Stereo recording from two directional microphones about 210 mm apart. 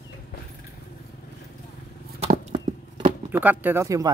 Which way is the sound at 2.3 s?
30° right (ahead or behind).